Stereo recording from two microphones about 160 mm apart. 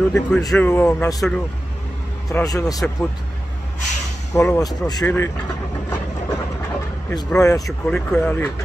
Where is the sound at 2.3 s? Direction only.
20° left (ahead or behind).